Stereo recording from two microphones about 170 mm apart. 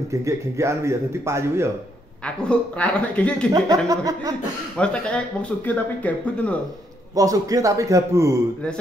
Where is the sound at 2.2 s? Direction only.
5° left (ahead or behind).